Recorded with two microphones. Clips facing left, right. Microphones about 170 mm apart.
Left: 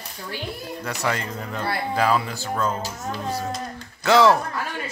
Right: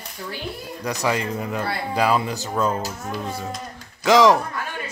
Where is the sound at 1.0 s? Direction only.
15° right (ahead or behind).